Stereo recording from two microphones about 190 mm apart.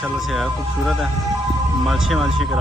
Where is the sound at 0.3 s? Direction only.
Centre (ahead or behind).